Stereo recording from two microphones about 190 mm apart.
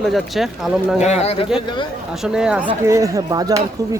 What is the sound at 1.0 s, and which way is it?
Speech, 35° left (ahead or behind).